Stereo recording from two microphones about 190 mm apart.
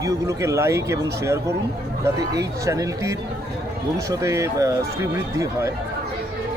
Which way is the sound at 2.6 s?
15° right (ahead or behind).